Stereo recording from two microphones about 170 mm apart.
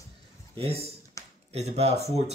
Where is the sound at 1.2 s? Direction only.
20° left (ahead or behind).